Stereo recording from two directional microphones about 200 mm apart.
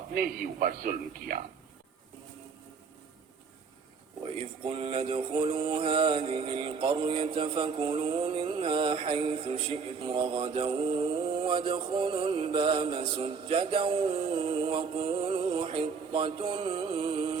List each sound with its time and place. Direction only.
0.1 s a man's voice: 45° right (ahead or behind)
4.4 s mantra: 25° right (ahead or behind)